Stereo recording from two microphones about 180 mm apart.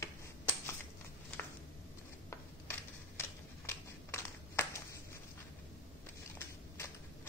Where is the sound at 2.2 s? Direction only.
15° left (ahead or behind).